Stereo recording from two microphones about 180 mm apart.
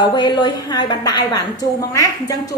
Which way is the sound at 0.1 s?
25° left (ahead or behind).